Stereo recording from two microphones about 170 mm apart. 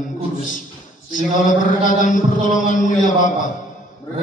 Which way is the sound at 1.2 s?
50° left (ahead or behind).